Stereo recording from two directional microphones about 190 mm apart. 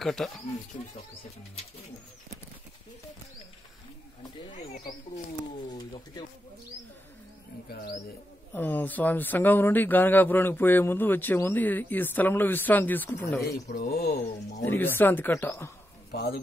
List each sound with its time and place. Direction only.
0.0 s speech: centre (ahead or behind)
4.7 s speech: 45° left (ahead or behind)
5.7 s speech: 20° left (ahead or behind)
7.7 s speech: 50° left (ahead or behind)
8.5 s speech: 10° left (ahead or behind)
13.7 s speech: 55° left (ahead or behind)
14.6 s speech: 10° left (ahead or behind)
16.1 s speech: 55° left (ahead or behind)